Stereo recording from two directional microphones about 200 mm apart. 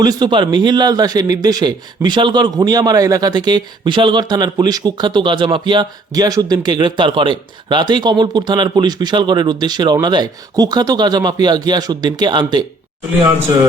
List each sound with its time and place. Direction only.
0.0 s a man's voice: 20° right (ahead or behind)